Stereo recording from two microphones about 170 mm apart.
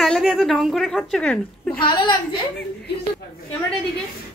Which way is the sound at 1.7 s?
30° left (ahead or behind).